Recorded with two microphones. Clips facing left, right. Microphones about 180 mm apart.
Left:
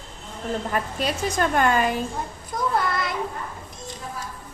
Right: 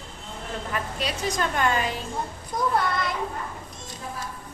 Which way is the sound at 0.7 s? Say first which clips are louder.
Left 2 dB; 50° left (ahead or behind).